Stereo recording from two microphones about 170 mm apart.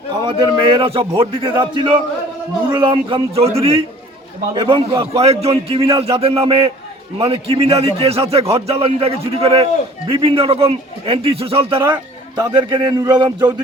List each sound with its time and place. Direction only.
0.1 s a man's voice: 25° right (ahead or behind)